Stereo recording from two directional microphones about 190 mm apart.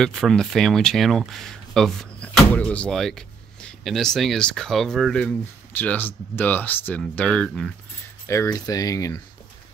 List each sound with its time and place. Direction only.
0.0 s speech: centre (ahead or behind)
8.3 s speech: 15° left (ahead or behind)